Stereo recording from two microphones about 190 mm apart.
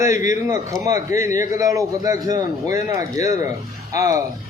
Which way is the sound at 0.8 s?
20° right (ahead or behind).